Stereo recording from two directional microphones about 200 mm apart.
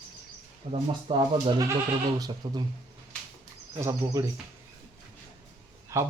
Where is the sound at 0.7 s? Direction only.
30° right (ahead or behind).